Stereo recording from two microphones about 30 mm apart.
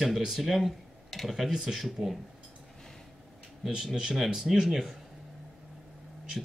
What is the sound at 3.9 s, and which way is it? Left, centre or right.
Speech, centre.